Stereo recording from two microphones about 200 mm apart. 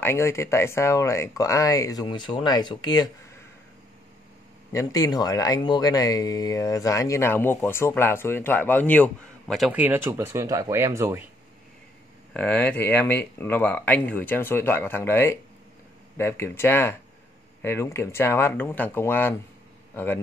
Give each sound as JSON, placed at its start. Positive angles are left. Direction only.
{"t": 0.0, "sound": "speech", "side_deg": 15}
{"t": 4.7, "sound": "speech", "side_deg": 20}
{"t": 12.4, "sound": "speech", "side_deg": 5}